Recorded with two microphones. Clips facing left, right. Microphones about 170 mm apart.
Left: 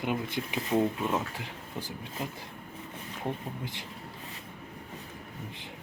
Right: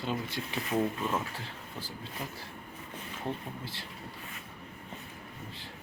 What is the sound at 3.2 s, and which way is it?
Speech, 20° left (ahead or behind).